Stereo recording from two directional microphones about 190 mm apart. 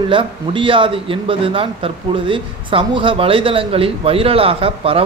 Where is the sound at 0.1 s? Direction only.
25° right (ahead or behind).